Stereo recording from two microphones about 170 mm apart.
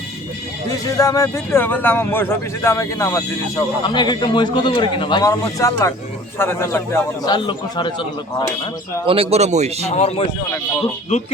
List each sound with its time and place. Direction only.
0.9 s a man's voice: 20° left (ahead or behind)
7.3 s speech: 30° left (ahead or behind)
9.0 s a man's voice: 35° right (ahead or behind)
9.9 s speech: 40° left (ahead or behind)